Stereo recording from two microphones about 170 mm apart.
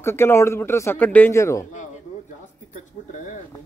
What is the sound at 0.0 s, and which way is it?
Speech, 15° left (ahead or behind).